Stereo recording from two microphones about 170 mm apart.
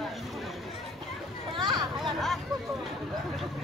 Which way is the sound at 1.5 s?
25° right (ahead or behind).